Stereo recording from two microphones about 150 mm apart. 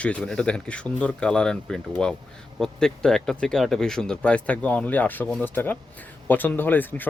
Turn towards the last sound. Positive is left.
turn(degrees=10)  # may be behind; listen again after turning